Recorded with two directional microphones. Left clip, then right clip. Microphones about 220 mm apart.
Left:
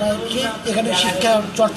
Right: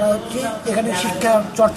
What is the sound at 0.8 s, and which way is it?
Speech, 10° right (ahead or behind).